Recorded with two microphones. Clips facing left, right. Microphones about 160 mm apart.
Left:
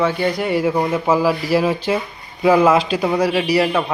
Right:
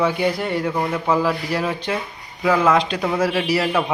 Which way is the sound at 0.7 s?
15° left (ahead or behind).